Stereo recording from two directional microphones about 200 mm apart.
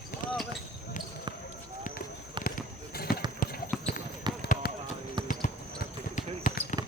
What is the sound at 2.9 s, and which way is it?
Basketball bounce, 50° left (ahead or behind).